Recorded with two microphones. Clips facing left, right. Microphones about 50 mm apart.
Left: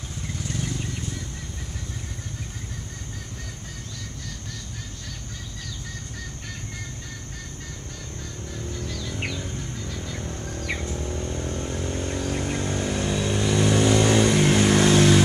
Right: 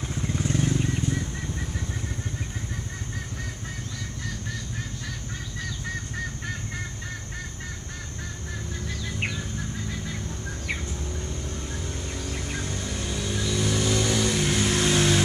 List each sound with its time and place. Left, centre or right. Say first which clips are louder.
0.1 s vehicle: right 5 dB; right
9.0 s music: right 2 dB; right
10.8 s a sound: left 4 dB; centre
11.3 s vehicle: left 5 dB; left
12.4 s vehicle: left 5 dB; centre
12.6 s vehicle: left 6 dB; left
14.4 s vehicle: left 6 dB; left
14.9 s vehicle: left 4 dB; centre